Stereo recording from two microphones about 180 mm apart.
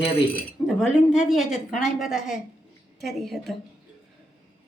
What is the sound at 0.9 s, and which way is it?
A woman's voice, 5° right (ahead or behind).